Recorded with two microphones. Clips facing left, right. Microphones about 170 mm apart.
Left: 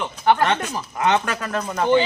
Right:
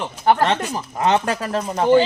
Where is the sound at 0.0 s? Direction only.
35° right (ahead or behind).